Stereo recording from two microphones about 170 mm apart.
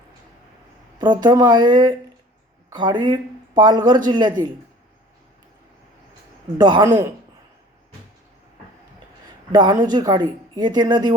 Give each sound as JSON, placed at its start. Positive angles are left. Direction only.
{"t": 0.9, "sound": "speech", "side_deg": -25}
{"t": 6.6, "sound": "speech", "side_deg": -25}
{"t": 9.5, "sound": "speech", "side_deg": -25}